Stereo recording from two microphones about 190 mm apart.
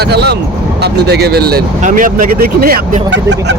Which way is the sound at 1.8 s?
45° right (ahead or behind).